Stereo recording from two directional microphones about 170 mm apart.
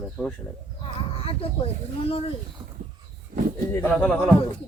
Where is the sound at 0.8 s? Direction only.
35° left (ahead or behind).